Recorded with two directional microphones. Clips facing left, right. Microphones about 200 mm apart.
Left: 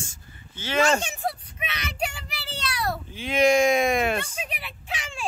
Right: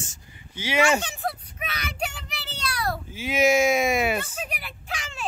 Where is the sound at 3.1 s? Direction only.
5° right (ahead or behind).